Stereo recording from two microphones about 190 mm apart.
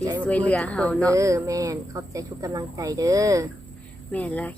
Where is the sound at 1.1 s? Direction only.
15° right (ahead or behind).